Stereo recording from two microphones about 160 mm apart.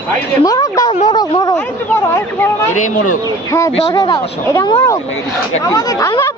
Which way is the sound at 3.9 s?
20° left (ahead or behind).